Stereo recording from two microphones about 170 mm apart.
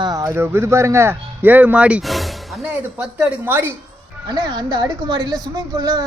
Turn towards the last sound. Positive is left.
turn(degrees=-25)  # may be behind; listen again after turning